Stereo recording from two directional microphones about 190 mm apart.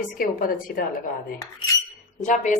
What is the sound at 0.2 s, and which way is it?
Speech, 50° left (ahead or behind).